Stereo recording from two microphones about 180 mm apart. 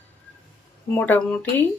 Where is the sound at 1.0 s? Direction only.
5° left (ahead or behind).